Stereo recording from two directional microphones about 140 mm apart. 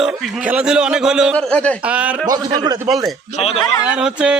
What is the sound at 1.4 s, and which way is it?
Speech, 10° left (ahead or behind).